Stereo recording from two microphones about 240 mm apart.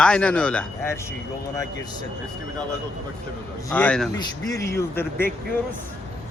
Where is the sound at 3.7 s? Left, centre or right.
Centre.